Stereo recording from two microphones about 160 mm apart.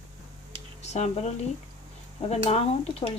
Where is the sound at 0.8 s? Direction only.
45° left (ahead or behind).